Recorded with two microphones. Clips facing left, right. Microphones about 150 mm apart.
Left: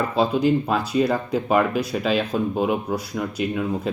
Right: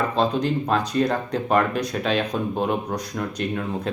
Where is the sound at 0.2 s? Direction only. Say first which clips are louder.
Left 5 dB; 5° left (ahead or behind).